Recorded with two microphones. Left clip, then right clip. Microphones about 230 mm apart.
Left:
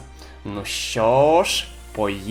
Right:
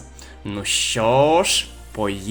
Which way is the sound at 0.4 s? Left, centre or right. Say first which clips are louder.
Right 5 dB; right.